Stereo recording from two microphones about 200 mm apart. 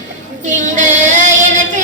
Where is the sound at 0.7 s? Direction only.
35° right (ahead or behind).